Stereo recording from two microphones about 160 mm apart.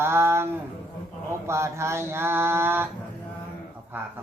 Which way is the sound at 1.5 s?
15° right (ahead or behind).